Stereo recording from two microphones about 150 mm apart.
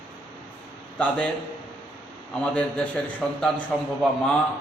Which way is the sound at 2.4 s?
5° left (ahead or behind).